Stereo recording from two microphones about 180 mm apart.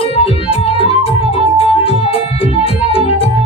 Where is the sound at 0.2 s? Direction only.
30° left (ahead or behind).